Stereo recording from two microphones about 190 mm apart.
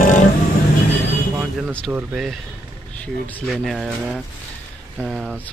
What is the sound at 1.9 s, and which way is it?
Speech, 5° right (ahead or behind).